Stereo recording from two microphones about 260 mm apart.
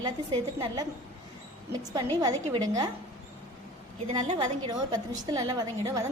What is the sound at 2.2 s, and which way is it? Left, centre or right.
Speech, centre.